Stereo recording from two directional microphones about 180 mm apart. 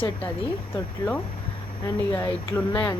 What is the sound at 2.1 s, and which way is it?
Speech, 15° left (ahead or behind).